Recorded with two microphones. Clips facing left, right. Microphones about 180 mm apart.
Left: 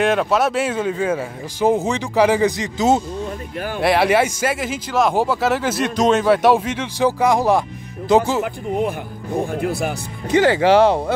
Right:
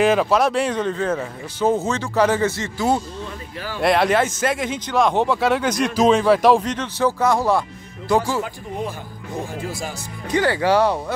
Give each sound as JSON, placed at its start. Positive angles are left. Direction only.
{"t": 0.0, "sound": "a man's voice", "side_deg": 0}
{"t": 3.8, "sound": "speech", "side_deg": 5}
{"t": 9.5, "sound": "speech", "side_deg": 60}
{"t": 10.2, "sound": "speech", "side_deg": 20}